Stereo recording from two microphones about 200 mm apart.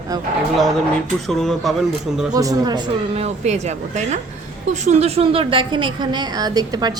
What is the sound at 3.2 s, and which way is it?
A woman's voice, 35° right (ahead or behind).